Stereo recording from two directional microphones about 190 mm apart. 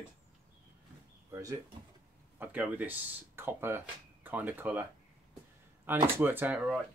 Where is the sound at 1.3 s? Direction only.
20° right (ahead or behind).